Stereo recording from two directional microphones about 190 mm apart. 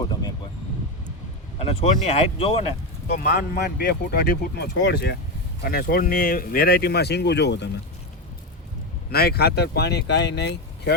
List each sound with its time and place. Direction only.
0.0 s a sound: 20° left (ahead or behind)
1.5 s speech: 35° left (ahead or behind)
3.2 s speech: 55° left (ahead or behind)
5.6 s speech: 50° left (ahead or behind)
9.0 s speech: 55° left (ahead or behind)